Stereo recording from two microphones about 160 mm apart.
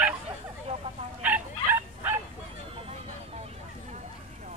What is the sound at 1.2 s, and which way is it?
Bow-wow, 10° right (ahead or behind).